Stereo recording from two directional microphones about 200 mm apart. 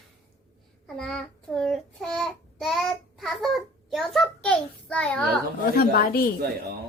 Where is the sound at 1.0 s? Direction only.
5° left (ahead or behind).